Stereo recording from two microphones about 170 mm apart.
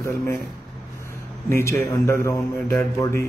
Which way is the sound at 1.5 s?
15° left (ahead or behind).